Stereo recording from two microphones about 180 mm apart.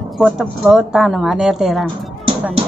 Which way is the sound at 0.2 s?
5° right (ahead or behind).